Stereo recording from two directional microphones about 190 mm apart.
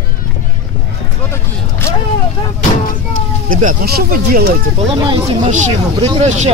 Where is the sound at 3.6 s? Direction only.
50° right (ahead or behind).